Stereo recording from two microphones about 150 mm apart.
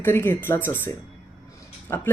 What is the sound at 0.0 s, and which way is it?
Speech, 15° left (ahead or behind).